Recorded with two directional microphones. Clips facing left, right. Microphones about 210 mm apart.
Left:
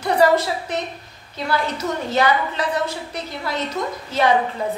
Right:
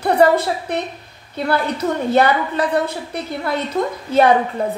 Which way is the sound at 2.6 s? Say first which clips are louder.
Right 4 dB; 55° right (ahead or behind).